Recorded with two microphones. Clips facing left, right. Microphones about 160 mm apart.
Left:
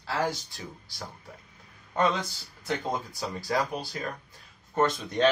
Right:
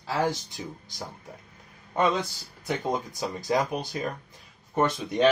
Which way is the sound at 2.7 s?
20° right (ahead or behind).